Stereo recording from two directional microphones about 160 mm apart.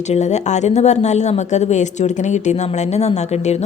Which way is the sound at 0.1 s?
45° left (ahead or behind).